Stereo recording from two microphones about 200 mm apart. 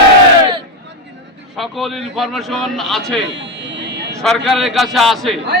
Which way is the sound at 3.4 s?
60° right (ahead or behind).